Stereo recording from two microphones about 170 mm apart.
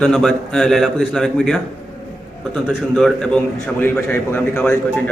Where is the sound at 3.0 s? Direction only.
5° left (ahead or behind).